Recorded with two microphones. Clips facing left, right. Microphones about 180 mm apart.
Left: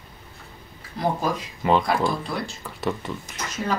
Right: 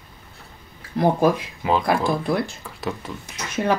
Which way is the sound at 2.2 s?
55° right (ahead or behind).